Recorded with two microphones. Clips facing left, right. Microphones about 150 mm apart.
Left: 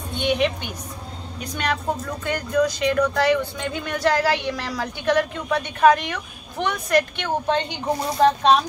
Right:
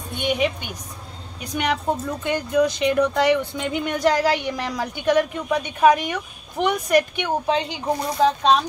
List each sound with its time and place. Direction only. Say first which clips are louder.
0.2 s speech: left 1 dB; 10° right (ahead or behind)
2.2 s speech: right 1 dB; 20° right (ahead or behind); by 8.5 s centre (ahead or behind)